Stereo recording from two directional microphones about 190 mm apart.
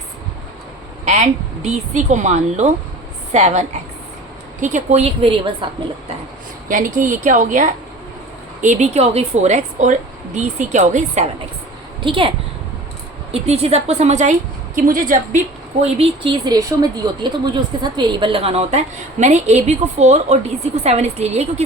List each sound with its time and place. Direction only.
1.0 s a woman's voice: 35° right (ahead or behind)
6.7 s speech: 45° right (ahead or behind)
12.0 s a woman's voice: 25° right (ahead or behind)
13.3 s speech: 30° right (ahead or behind)
15.8 s speech: 30° right (ahead or behind)